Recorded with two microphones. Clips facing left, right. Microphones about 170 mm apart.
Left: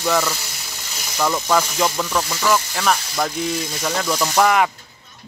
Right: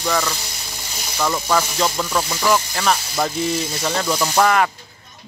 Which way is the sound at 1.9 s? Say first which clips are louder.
Even; 10° right (ahead or behind).